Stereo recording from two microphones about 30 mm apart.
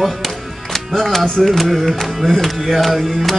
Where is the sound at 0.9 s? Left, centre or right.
Centre.